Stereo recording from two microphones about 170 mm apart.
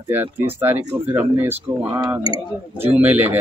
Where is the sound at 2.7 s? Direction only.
10° right (ahead or behind).